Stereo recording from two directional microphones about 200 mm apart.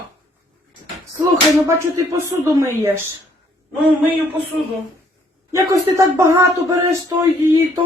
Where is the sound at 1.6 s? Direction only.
15° right (ahead or behind).